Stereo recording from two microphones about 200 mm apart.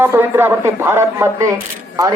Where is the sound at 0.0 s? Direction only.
10° right (ahead or behind).